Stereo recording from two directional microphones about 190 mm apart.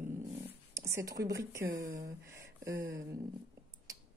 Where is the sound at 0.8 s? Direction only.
15° right (ahead or behind).